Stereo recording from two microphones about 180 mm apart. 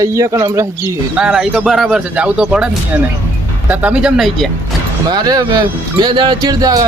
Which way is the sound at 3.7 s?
10° right (ahead or behind).